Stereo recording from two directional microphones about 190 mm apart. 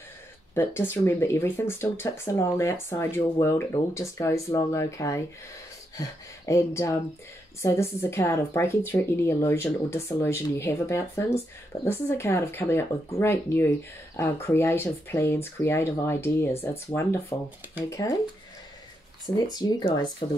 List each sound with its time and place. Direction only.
0.6 s speech: 10° left (ahead or behind)
19.3 s speech: 20° left (ahead or behind)